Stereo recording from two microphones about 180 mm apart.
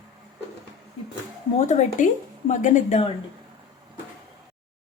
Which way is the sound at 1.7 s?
45° left (ahead or behind).